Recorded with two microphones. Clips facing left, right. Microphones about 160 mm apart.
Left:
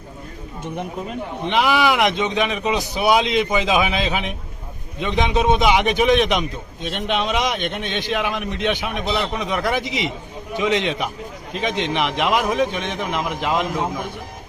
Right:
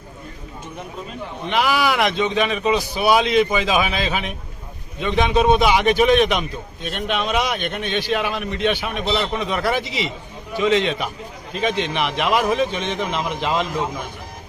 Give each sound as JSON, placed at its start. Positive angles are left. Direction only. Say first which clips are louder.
{"t": 1.5, "sound": "a man's voice", "louder": "left 1 dB", "side_deg": 20}